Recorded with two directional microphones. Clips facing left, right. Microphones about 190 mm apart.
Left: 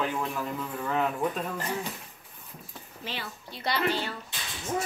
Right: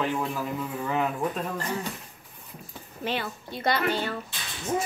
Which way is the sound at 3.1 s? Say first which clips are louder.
Right 8 dB; 50° right (ahead or behind).